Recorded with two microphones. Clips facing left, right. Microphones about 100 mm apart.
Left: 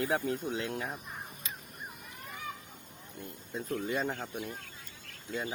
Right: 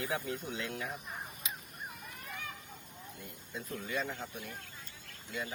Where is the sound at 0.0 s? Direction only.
40° left (ahead or behind).